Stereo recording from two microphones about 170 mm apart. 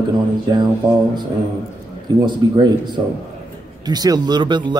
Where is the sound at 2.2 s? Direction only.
25° right (ahead or behind).